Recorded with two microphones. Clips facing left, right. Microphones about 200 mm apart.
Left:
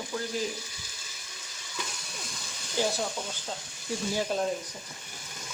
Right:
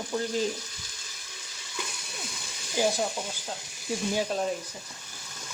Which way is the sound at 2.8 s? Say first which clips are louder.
Right 3 dB; 10° right (ahead or behind).